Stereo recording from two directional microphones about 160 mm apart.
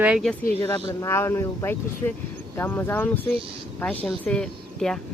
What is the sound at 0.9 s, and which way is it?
Speech, 20° left (ahead or behind).